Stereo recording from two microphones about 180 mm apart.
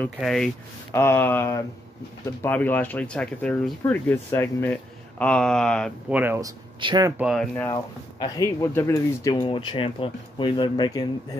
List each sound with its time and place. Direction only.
0.0 s speech: centre (ahead or behind)
0.9 s speech: 10° left (ahead or behind)
6.0 s speech: 10° right (ahead or behind)
6.8 s speech: 25° right (ahead or behind)
7.2 s speech: centre (ahead or behind)
7.7 s speech: 20° left (ahead or behind)